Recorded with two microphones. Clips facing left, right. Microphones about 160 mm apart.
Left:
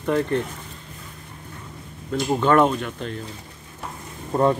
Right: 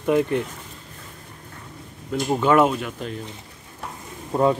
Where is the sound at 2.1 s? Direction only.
10° right (ahead or behind).